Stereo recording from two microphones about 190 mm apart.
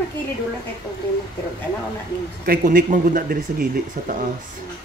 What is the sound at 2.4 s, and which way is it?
Speech, 50° right (ahead or behind).